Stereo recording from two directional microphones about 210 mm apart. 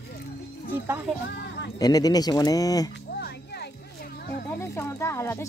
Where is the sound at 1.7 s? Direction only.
15° left (ahead or behind).